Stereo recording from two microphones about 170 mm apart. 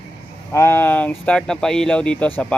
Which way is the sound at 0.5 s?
15° left (ahead or behind).